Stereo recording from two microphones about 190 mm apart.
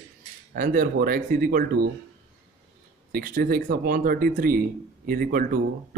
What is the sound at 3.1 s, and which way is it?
Speech, 50° right (ahead or behind).